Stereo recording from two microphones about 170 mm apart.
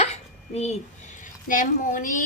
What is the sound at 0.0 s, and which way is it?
Hiccup, 40° left (ahead or behind).